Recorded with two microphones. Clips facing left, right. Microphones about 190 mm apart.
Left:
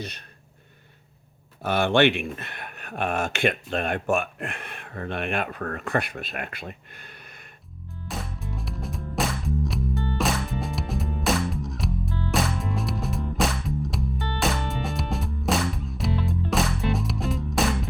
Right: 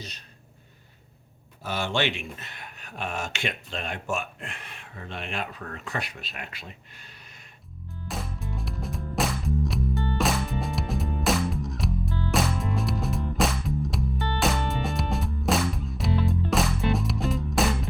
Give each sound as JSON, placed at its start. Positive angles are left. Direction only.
{"t": 0.0, "sound": "speech", "side_deg": 60}
{"t": 1.6, "sound": "speech", "side_deg": 60}
{"t": 8.0, "sound": "music", "side_deg": 0}